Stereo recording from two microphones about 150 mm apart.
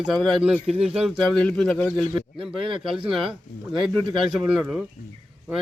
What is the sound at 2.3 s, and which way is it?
Speech, 35° right (ahead or behind).